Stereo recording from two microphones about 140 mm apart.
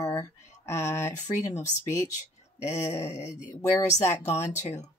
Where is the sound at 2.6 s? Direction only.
20° left (ahead or behind).